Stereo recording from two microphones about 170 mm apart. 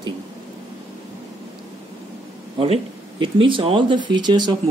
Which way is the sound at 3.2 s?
30° right (ahead or behind).